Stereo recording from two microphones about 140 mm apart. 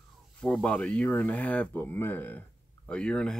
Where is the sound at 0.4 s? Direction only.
5° left (ahead or behind).